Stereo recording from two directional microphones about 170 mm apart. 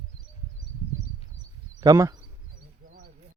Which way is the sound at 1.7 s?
20° right (ahead or behind).